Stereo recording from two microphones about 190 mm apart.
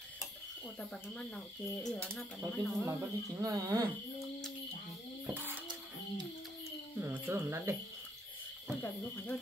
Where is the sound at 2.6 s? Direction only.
10° right (ahead or behind).